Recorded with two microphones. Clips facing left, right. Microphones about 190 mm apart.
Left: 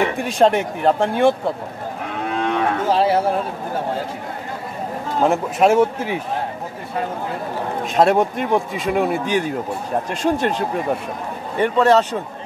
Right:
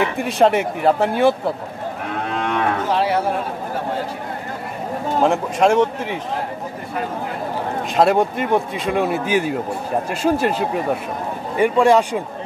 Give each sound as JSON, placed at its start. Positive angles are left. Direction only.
{"t": 0.2, "sound": "speech", "side_deg": 0}
{"t": 2.9, "sound": "speech", "side_deg": 30}
{"t": 5.2, "sound": "speech", "side_deg": 5}
{"t": 7.9, "sound": "a man's voice", "side_deg": 0}